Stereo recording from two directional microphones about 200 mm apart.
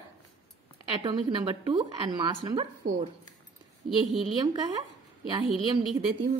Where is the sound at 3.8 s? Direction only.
Centre (ahead or behind).